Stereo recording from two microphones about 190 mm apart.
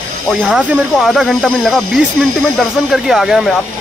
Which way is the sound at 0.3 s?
5° right (ahead or behind).